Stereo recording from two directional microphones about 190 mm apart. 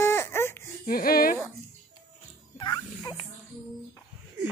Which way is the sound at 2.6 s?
20° left (ahead or behind).